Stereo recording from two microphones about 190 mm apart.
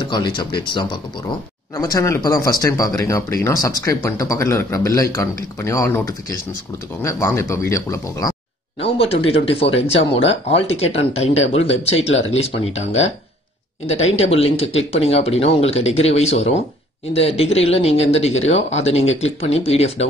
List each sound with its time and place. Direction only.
0.0 s speech: 25° left (ahead or behind)
8.7 s speech: 30° left (ahead or behind)